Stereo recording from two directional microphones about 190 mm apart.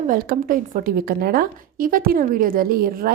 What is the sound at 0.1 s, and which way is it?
A woman's voice, 50° right (ahead or behind).